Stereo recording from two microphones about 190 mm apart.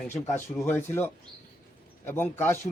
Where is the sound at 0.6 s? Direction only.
10° left (ahead or behind).